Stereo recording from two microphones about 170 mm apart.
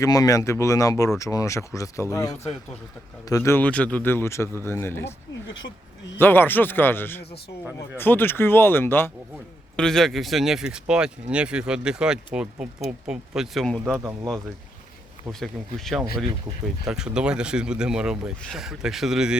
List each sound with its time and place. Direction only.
0.0 s a man's voice: 20° left (ahead or behind)
6.1 s a man's voice: 10° left (ahead or behind)
15.3 s speech: centre (ahead or behind)